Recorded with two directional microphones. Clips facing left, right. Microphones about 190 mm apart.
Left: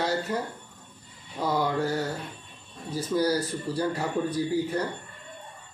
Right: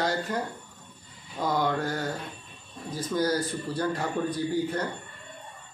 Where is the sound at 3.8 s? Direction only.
10° left (ahead or behind).